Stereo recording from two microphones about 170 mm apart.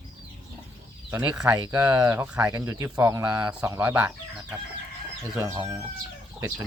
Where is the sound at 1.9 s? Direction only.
15° right (ahead or behind).